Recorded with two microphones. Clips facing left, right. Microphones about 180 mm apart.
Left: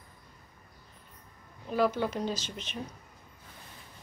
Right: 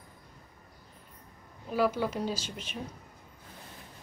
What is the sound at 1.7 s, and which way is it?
Speech, 5° right (ahead or behind).